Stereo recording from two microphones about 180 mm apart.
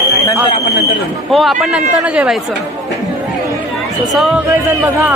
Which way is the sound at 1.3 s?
Centre (ahead or behind).